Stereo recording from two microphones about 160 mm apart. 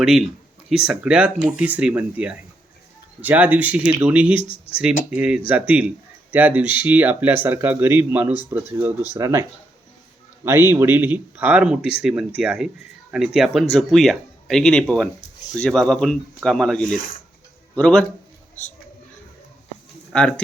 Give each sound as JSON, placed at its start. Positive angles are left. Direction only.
{"t": 0.0, "sound": "speech", "side_deg": -5}
{"t": 4.4, "sound": "speech", "side_deg": 35}
{"t": 4.8, "sound": "speech", "side_deg": -5}
{"t": 20.1, "sound": "speech", "side_deg": 5}